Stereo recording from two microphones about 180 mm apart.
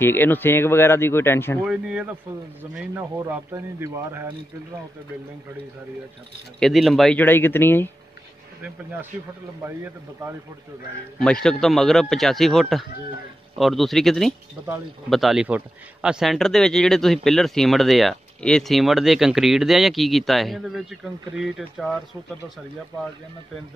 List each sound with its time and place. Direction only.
0.0 s speech: 10° left (ahead or behind)
1.7 s a man's voice: 5° right (ahead or behind)
6.6 s speech: centre (ahead or behind)
9.6 s a man's voice: 15° right (ahead or behind)
11.1 s speech: 5° left (ahead or behind)